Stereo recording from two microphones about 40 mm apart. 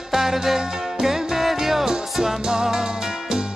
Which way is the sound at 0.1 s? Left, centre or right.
Centre.